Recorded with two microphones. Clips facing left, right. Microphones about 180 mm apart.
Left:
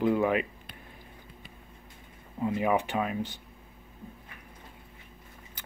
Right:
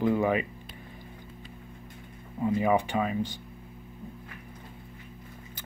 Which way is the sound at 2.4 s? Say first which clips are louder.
Right 2 dB; 5° left (ahead or behind).